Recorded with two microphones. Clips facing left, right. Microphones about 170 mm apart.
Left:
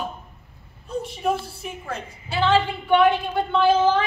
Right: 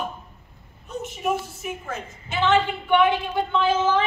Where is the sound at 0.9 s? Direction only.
30° left (ahead or behind).